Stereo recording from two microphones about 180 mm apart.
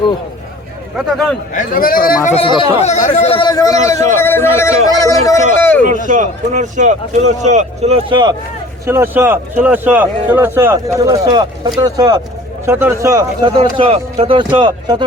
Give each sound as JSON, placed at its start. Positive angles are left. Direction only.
{"t": 0.9, "sound": "a man's voice", "side_deg": 5}
{"t": 1.5, "sound": "speech", "side_deg": 50}
{"t": 2.3, "sound": "a man's voice", "side_deg": 30}
{"t": 5.0, "sound": "a sound", "side_deg": 20}
{"t": 5.8, "sound": "a man's voice", "side_deg": -45}
{"t": 8.9, "sound": "speech", "side_deg": -10}